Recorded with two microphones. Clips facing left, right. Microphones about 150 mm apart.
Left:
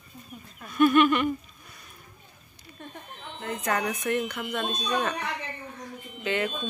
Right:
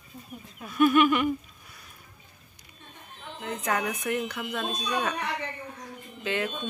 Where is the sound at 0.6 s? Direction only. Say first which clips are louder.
Left 1 dB; 5° right (ahead or behind).